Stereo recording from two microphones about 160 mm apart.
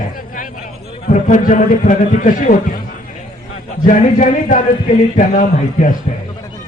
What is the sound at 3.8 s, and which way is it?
A man's voice, 55° left (ahead or behind).